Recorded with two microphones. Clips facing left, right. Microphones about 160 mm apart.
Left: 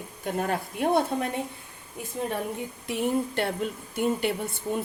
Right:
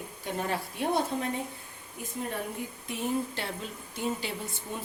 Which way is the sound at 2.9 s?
60° left (ahead or behind).